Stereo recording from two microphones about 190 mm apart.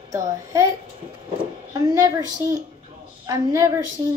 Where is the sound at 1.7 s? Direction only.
20° right (ahead or behind).